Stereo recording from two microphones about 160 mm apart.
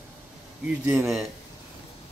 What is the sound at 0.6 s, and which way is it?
Speech, 10° right (ahead or behind).